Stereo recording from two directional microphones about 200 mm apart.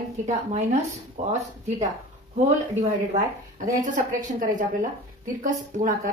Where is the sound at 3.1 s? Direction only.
40° right (ahead or behind).